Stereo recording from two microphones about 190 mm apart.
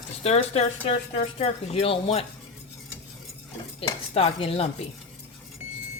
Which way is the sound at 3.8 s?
30° left (ahead or behind).